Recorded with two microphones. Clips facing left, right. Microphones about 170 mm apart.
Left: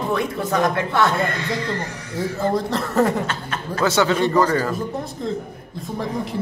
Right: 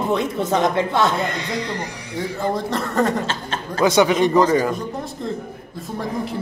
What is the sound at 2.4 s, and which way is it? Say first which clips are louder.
Speech: left 1 dB; centre (ahead or behind).